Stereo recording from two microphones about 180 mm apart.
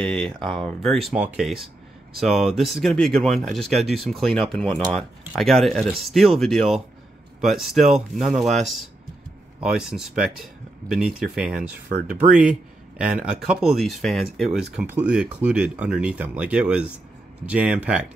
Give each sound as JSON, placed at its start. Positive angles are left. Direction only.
{"t": 0.0, "sound": "speech", "side_deg": 0}